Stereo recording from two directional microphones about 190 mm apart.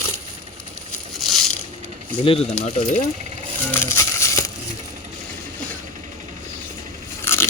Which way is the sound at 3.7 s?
15° left (ahead or behind).